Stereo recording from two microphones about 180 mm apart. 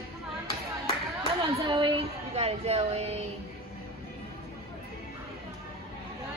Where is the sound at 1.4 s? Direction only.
25° right (ahead or behind).